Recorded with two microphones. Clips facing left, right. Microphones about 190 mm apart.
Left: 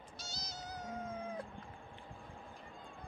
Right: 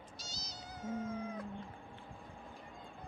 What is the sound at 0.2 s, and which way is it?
Cat, 55° left (ahead or behind).